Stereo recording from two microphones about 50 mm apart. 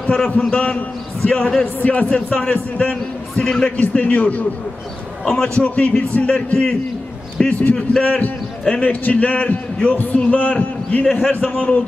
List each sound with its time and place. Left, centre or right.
0.2 s a man's voice: left
1.8 s a man's voice: left; by 3.7 s centre
3.7 s a man's voice: left
5.2 s a man's voice: centre
7.4 s a man's voice: centre
8.0 s a man's voice: left
11.2 s a man's voice: centre